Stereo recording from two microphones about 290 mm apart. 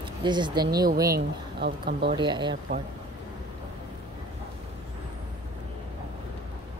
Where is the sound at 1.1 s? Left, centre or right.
Right.